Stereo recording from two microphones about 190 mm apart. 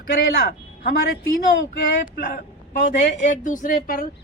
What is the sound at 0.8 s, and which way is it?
Speech, 55° left (ahead or behind).